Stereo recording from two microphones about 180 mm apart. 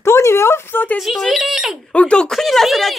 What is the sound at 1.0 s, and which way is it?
Speech, centre (ahead or behind).